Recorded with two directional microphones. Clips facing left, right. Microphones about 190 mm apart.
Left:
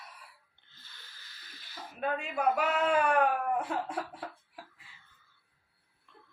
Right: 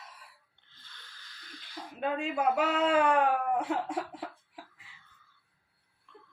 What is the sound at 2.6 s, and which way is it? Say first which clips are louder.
Speech: right 3 dB; 25° right (ahead or behind).